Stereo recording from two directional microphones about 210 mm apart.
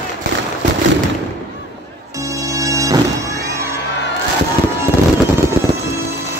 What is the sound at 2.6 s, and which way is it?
Music, 15° right (ahead or behind).